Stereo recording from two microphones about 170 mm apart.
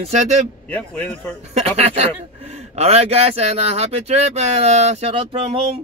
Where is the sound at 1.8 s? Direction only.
40° right (ahead or behind).